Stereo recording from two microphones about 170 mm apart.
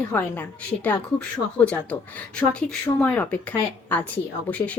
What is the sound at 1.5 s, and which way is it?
Speech, 5° left (ahead or behind).